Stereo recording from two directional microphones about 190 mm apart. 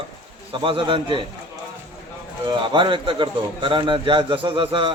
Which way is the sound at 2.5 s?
25° right (ahead or behind).